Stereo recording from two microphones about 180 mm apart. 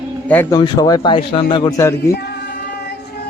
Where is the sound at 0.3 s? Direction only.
10° left (ahead or behind).